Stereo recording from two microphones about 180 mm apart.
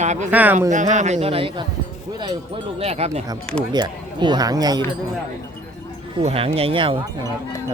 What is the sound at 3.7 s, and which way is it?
Speech, 25° right (ahead or behind).